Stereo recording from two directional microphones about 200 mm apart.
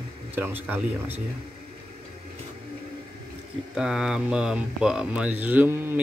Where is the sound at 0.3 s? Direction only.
10° right (ahead or behind).